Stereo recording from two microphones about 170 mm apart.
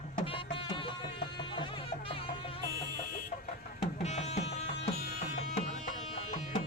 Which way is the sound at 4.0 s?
40° left (ahead or behind).